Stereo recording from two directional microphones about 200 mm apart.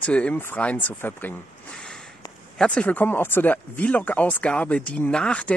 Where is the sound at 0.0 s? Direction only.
5° left (ahead or behind).